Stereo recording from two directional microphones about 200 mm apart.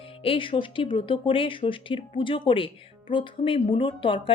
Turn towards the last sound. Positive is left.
turn(degrees=25)  # may be behind; listen again after turning